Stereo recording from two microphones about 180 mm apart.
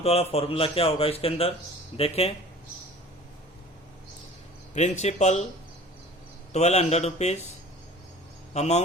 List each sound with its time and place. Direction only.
0.0 s a man's voice: 35° left (ahead or behind)
4.7 s a man's voice: 40° left (ahead or behind)
6.5 s a man's voice: 35° left (ahead or behind)
8.5 s a man's voice: 35° left (ahead or behind)